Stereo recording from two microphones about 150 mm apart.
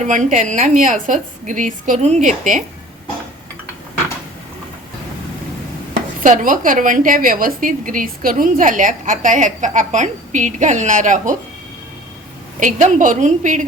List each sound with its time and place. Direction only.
0.0 s a woman's voice: 55° right (ahead or behind)
6.1 s a woman's voice: 65° right (ahead or behind)
12.5 s a woman's voice: 60° right (ahead or behind)